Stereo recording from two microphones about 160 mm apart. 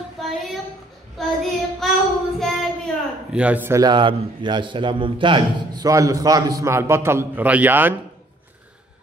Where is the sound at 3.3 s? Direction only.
5° right (ahead or behind).